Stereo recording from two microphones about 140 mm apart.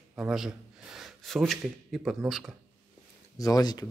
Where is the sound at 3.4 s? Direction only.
25° left (ahead or behind).